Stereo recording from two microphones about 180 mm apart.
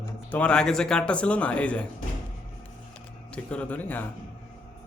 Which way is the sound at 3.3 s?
5° left (ahead or behind).